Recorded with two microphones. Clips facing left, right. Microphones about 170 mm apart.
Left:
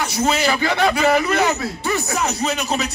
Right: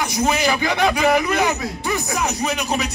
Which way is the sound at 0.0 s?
15° right (ahead or behind).